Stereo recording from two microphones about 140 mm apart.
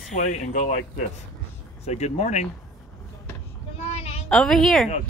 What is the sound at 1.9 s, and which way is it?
Speech, 55° left (ahead or behind).